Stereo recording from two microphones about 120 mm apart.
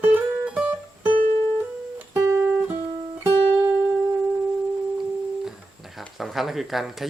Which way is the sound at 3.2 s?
15° right (ahead or behind).